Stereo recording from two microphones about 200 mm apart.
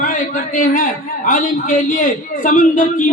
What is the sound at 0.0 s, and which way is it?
A man's voice, 40° left (ahead or behind).